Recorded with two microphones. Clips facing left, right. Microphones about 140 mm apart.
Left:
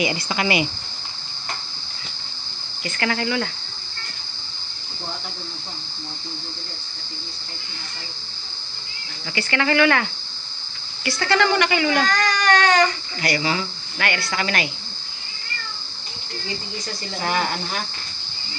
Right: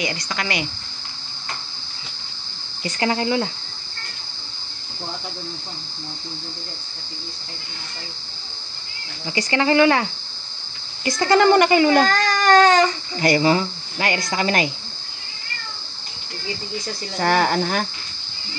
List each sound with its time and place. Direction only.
0.0 s speech: 15° left (ahead or behind)
3.0 s speech: 25° right (ahead or behind)
9.5 s speech: 25° right (ahead or behind)
11.2 s speech: 40° right (ahead or behind)
12.4 s speech: 25° right (ahead or behind)
13.4 s speech: 40° right (ahead or behind)
13.9 s speech: 25° right (ahead or behind)
17.2 s speech: 50° right (ahead or behind)